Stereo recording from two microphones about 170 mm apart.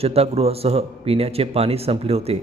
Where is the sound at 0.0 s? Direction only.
35° right (ahead or behind).